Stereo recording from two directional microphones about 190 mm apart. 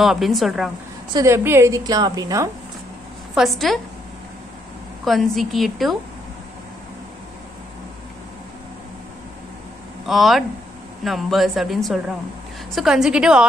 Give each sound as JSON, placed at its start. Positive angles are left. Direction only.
{"t": 0.0, "sound": "a woman's voice", "side_deg": 0}
{"t": 1.1, "sound": "a woman's voice", "side_deg": -15}
{"t": 3.3, "sound": "a woman's voice", "side_deg": 0}
{"t": 5.0, "sound": "a woman's voice", "side_deg": 0}
{"t": 10.0, "sound": "a woman's voice", "side_deg": 0}